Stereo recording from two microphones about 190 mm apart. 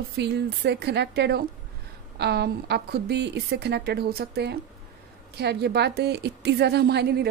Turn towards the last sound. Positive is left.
turn(degrees=-60)  # may be behind; listen again after turning